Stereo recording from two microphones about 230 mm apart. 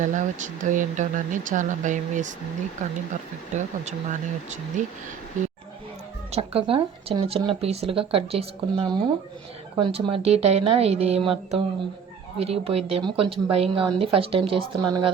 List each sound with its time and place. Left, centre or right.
0.0 s speech: right
6.3 s speech: right